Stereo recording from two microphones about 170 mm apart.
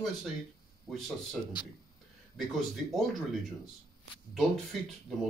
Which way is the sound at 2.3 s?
Centre (ahead or behind).